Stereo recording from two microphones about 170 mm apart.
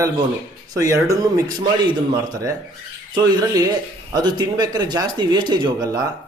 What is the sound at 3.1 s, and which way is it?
A man's voice, 25° right (ahead or behind).